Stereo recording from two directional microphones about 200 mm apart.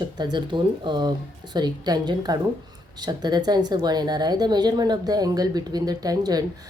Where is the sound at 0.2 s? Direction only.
20° right (ahead or behind).